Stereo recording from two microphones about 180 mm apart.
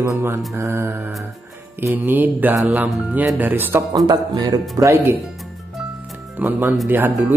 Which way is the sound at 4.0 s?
25° right (ahead or behind).